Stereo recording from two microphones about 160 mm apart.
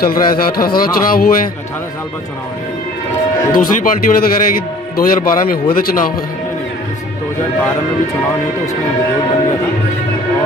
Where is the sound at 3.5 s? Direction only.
60° left (ahead or behind).